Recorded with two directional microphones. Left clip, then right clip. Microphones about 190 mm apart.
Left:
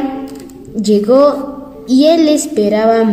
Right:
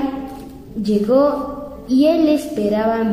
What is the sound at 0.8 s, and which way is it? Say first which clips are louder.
Child singing: left 6 dB; 35° left (ahead or behind).